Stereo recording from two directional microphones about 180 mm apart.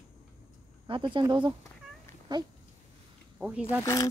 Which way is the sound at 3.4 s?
5° right (ahead or behind).